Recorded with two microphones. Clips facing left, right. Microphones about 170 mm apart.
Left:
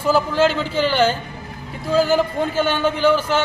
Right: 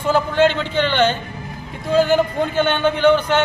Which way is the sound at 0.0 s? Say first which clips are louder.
Right 1 dB; 5° left (ahead or behind).